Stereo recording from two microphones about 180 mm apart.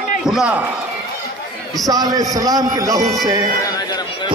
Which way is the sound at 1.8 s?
20° right (ahead or behind).